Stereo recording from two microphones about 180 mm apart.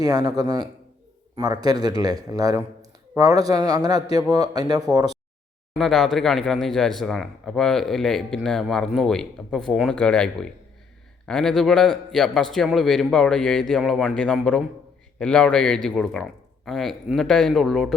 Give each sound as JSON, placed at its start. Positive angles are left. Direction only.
{"t": 0.0, "sound": "speech", "side_deg": -20}
{"t": 5.7, "sound": "speech", "side_deg": 0}